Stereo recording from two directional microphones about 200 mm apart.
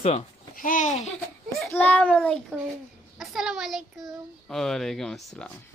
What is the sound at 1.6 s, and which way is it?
Speech, 10° left (ahead or behind).